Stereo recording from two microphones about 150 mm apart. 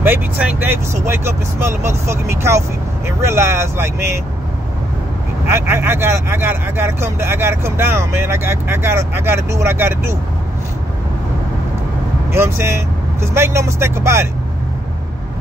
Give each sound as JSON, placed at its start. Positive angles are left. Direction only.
{"t": 0.0, "sound": "speech", "side_deg": -10}
{"t": 5.5, "sound": "speech", "side_deg": -15}
{"t": 12.3, "sound": "speech", "side_deg": -15}